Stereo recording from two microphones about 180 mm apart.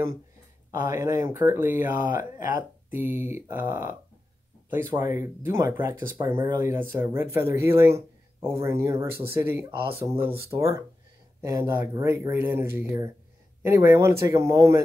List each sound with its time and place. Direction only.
0.7 s speech: 15° right (ahead or behind)